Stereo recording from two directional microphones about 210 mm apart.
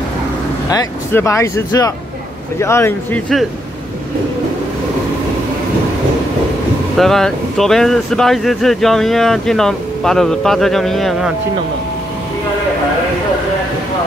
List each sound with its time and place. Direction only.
0.7 s speech: 15° left (ahead or behind)
7.0 s speech: centre (ahead or behind)